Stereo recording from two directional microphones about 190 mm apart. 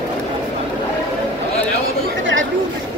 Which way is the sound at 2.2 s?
85° right.